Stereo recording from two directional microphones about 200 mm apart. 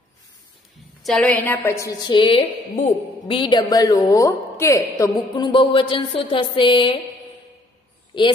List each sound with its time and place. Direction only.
1.0 s a woman's voice: 5° left (ahead or behind); by 7.0 s 25° left (ahead or behind)
8.1 s a woman's voice: 25° left (ahead or behind)